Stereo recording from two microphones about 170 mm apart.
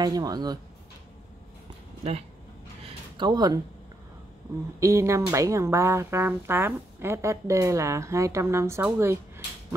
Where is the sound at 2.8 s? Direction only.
25° right (ahead or behind).